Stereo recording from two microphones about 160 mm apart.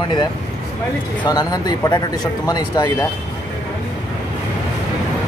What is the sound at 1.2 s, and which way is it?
Speech, 25° left (ahead or behind).